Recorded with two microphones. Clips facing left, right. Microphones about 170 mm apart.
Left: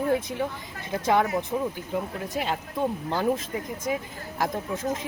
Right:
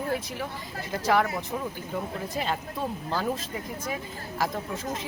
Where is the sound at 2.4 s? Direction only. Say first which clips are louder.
Left 3 dB; 15° left (ahead or behind).